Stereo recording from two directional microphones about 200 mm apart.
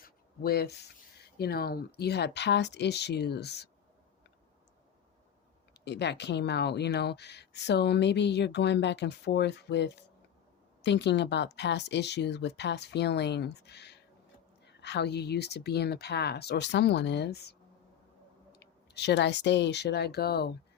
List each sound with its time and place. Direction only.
0.0 s a sound: 50° left (ahead or behind)
1.4 s speech: 50° left (ahead or behind)
5.8 s speech: 60° left (ahead or behind)
18.5 s speech: 55° left (ahead or behind)